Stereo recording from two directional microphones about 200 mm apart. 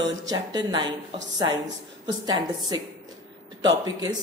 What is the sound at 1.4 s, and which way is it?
Speech, 70° right (ahead or behind).